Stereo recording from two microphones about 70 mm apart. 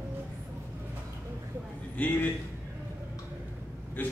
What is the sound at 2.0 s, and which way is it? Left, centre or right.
Speech, left.